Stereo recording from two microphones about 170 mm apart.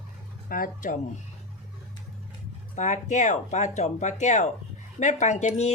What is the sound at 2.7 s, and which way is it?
Wind chime, 45° left (ahead or behind).